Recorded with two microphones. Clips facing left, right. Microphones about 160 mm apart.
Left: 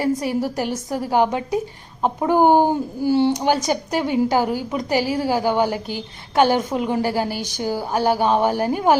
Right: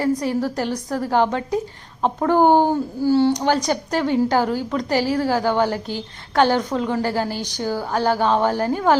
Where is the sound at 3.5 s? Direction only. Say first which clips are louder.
Even; 5° left (ahead or behind).